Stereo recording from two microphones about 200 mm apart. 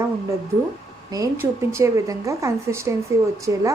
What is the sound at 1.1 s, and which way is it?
A woman's voice, 15° right (ahead or behind).